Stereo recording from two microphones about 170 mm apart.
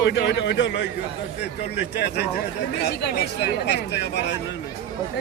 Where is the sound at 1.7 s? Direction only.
75° left (ahead or behind).